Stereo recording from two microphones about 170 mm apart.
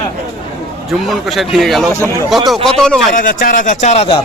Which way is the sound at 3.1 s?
55° left (ahead or behind).